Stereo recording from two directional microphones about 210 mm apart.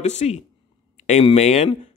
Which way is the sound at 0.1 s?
30° left (ahead or behind).